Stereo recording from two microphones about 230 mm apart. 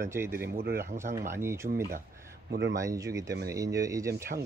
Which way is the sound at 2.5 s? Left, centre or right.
Right.